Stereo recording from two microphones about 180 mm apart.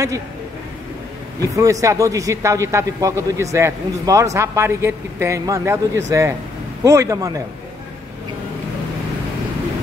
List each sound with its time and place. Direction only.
1.4 s a man's voice: 20° right (ahead or behind)